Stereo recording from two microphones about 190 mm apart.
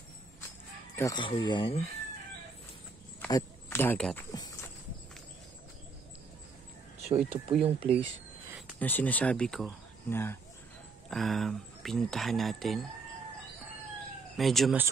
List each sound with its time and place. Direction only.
0.9 s speech: 20° left (ahead or behind)
3.3 s speech: 15° left (ahead or behind)
7.1 s speech: 30° right (ahead or behind)
8.5 s a sound: centre (ahead or behind)
8.7 s speech: 10° left (ahead or behind)
11.1 s speech: centre (ahead or behind)
14.3 s speech: centre (ahead or behind)